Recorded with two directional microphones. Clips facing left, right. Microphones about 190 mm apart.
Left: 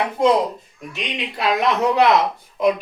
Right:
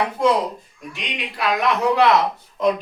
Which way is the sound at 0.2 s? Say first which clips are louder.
Left 2 dB; 20° left (ahead or behind).